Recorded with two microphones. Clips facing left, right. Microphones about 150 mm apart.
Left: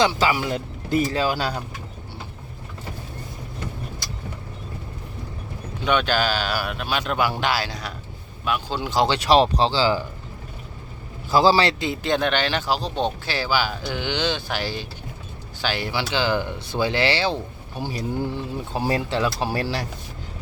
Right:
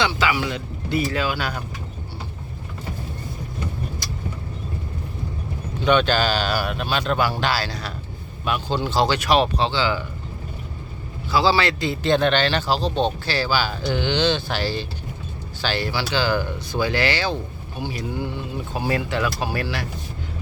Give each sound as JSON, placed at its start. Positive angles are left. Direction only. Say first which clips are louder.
{"t": 0.0, "sound": "speech", "louder": "left 2 dB", "side_deg": 40}
{"t": 5.8, "sound": "speech", "louder": "right 3 dB", "side_deg": 5}
{"t": 8.4, "sound": "speech", "louder": "right 2 dB", "side_deg": 5}
{"t": 8.9, "sound": "speech", "louder": "even", "side_deg": 15}
{"t": 9.1, "sound": "speech", "louder": "left 2 dB", "side_deg": 30}
{"t": 11.3, "sound": "a man's voice", "louder": "left 2 dB", "side_deg": 45}
{"t": 11.8, "sound": "speech", "louder": "right 3 dB", "side_deg": 15}